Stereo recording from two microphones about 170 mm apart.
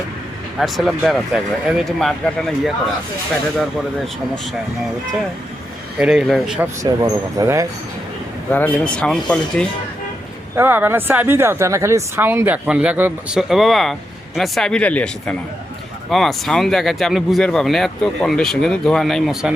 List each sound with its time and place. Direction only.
0.6 s speech: centre (ahead or behind)
6.0 s speech: 5° right (ahead or behind)
6.6 s speech: 20° right (ahead or behind)
8.4 s speech: 10° left (ahead or behind)
10.5 s speech: 10° right (ahead or behind)